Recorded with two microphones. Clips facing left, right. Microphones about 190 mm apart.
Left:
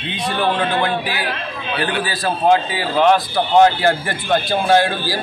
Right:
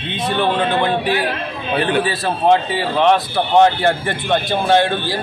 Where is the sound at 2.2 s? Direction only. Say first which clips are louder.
Left 3 dB; centre (ahead or behind).